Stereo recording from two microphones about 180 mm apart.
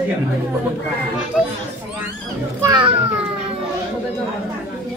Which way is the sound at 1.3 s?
5° right (ahead or behind).